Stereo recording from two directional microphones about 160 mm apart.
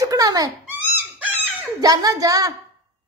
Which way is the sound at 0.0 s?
20° right (ahead or behind).